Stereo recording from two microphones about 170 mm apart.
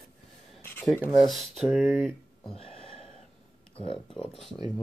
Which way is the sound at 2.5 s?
35° left (ahead or behind).